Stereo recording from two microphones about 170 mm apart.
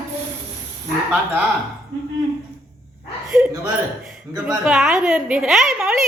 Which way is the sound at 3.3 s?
10° right (ahead or behind).